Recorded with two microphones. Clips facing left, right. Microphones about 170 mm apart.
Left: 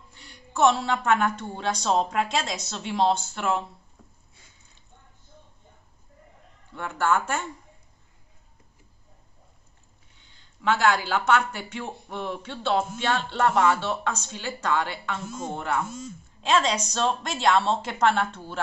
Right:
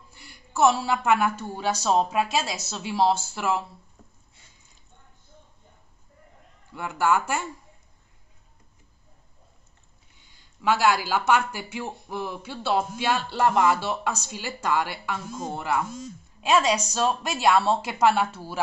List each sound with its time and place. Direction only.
0.1 s speech: 10° right (ahead or behind)
6.7 s speech: 10° right (ahead or behind)
10.1 s speech: 10° right (ahead or behind)